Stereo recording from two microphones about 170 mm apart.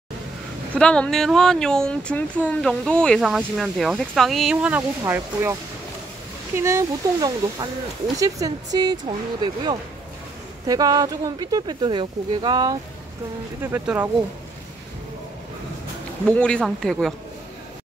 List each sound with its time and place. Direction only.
0.7 s speech: 5° left (ahead or behind); by 12.7 s 25° right (ahead or behind)
13.6 s speech: 10° right (ahead or behind)
16.3 s speech: 5° left (ahead or behind)